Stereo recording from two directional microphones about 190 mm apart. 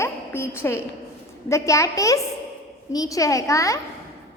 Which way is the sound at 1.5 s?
15° left (ahead or behind).